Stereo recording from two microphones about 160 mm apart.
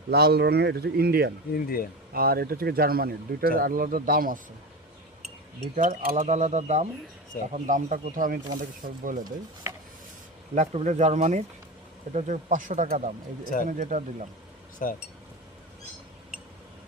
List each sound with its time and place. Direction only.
0.1 s speech: 85° right
1.5 s speech: 65° left (ahead or behind)
2.1 s speech: 70° right (ahead or behind)
5.7 s speech: 55° right (ahead or behind)
6.1 s speech: 40° right (ahead or behind); by 9.2 s 55° right (ahead or behind)
9.7 s speech: 15° right (ahead or behind)
10.5 s speech: 40° right (ahead or behind)
14.8 s speech: 60° left (ahead or behind)